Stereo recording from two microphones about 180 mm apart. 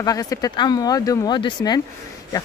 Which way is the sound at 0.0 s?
20° left (ahead or behind).